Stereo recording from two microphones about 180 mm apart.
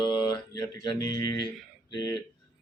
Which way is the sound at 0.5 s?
20° left (ahead or behind).